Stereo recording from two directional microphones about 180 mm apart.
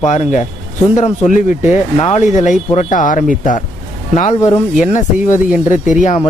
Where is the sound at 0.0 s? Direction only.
40° left (ahead or behind).